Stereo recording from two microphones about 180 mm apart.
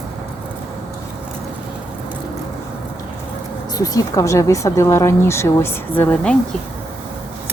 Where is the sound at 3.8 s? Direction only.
20° left (ahead or behind).